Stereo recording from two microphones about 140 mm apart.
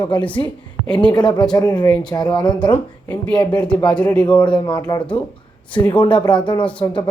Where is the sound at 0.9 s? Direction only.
35° left (ahead or behind).